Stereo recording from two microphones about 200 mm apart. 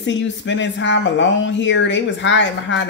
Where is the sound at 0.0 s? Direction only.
65° left (ahead or behind).